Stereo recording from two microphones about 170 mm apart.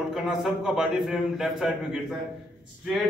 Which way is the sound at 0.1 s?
Centre (ahead or behind).